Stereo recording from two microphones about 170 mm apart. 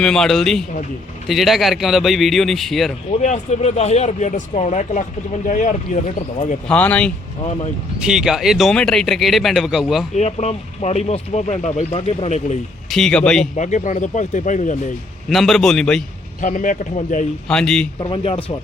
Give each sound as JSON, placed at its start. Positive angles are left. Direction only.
{"t": 0.0, "sound": "speech", "side_deg": 5}
{"t": 3.2, "sound": "speech", "side_deg": 45}
{"t": 6.7, "sound": "speech", "side_deg": 10}
{"t": 8.0, "sound": "speech", "side_deg": -5}
{"t": 10.2, "sound": "speech", "side_deg": 40}
{"t": 12.9, "sound": "speech", "side_deg": 5}
{"t": 13.6, "sound": "speech", "side_deg": 45}
{"t": 15.3, "sound": "speech", "side_deg": 0}
{"t": 16.4, "sound": "speech", "side_deg": 50}
{"t": 17.5, "sound": "speech", "side_deg": 5}
{"t": 18.0, "sound": "speech", "side_deg": 35}